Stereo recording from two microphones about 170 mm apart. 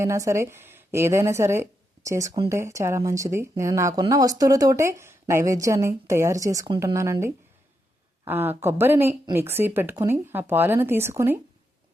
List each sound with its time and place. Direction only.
0.0 s a woman's voice: 15° right (ahead or behind)